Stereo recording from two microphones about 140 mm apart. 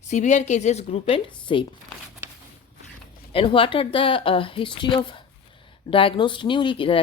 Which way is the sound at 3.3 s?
40° left (ahead or behind).